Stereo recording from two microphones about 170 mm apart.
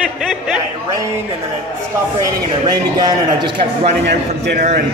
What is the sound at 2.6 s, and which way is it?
A man's voice, 25° right (ahead or behind).